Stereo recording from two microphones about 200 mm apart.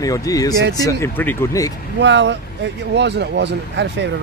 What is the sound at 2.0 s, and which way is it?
Speech, 60° right (ahead or behind).